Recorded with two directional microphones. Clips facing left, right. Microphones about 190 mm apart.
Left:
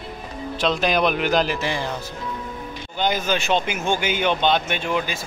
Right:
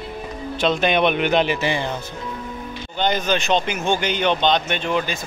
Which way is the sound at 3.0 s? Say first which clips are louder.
Right 2 dB; 5° left (ahead or behind).